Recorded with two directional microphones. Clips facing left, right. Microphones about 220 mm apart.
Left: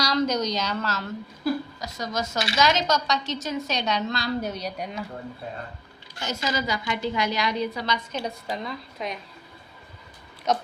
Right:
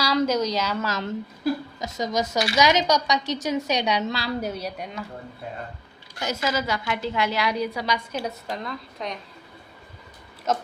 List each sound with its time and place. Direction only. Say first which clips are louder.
0.0 s a woman's voice: right 2 dB; 5° right (ahead or behind)
6.1 s a woman's voice: right 2 dB; 10° right (ahead or behind)
10.5 s a woman's voice: left 1 dB; 5° right (ahead or behind)